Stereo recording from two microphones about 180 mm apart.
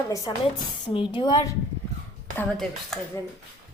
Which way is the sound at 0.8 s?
25° left (ahead or behind).